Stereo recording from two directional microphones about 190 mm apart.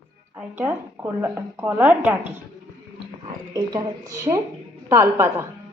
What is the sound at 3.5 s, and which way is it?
Speech, 20° right (ahead or behind).